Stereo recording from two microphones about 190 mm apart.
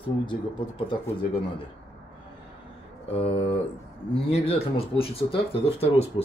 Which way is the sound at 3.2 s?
30° left (ahead or behind).